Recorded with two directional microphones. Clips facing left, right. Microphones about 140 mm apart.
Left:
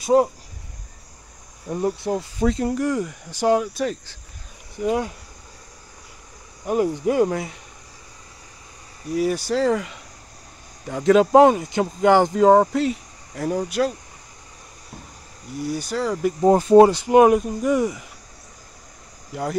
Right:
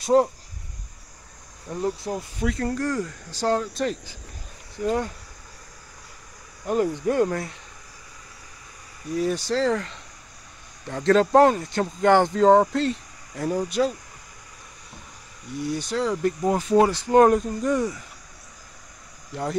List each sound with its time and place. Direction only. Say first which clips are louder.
0.0 s speech: left 2 dB; 5° left (ahead or behind)
1.7 s speech: left 4 dB; 20° left (ahead or behind)
2.6 s speech: left 3 dB; 15° left (ahead or behind)
6.6 s speech: left 2 dB; 5° left (ahead or behind)
9.1 s speech: left 2 dB; 10° left (ahead or behind)
15.5 s speech: left 1 dB; 5° left (ahead or behind)
16.3 s speech: left 9 dB; 35° left (ahead or behind)
16.8 s speech: left 3 dB; 15° left (ahead or behind)